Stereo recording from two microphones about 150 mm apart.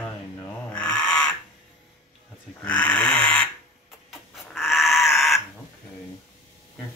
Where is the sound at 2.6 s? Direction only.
10° left (ahead or behind).